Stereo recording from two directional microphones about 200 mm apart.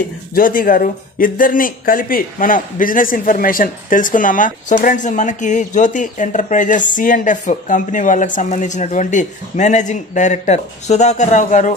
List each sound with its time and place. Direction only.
0.3 s speech: 45° left (ahead or behind)